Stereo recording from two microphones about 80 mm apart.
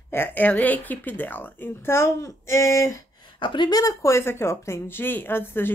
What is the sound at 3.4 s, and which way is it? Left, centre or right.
Speech, left.